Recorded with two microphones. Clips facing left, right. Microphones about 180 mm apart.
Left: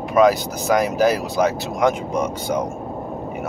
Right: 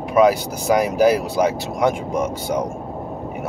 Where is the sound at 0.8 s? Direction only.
10° right (ahead or behind).